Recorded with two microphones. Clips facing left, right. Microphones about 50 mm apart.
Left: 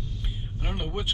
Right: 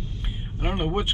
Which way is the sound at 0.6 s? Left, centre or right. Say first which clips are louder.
Right 7 dB; right.